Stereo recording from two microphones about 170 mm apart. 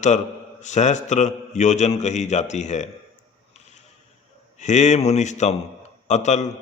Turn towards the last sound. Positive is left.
turn(degrees=40)  # may be behind; listen again after turning